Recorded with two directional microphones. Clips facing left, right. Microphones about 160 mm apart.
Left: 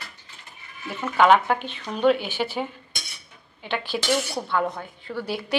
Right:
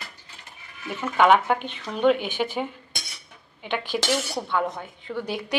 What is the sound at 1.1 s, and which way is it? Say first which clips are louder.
Speech: left 1 dB; 15° right (ahead or behind).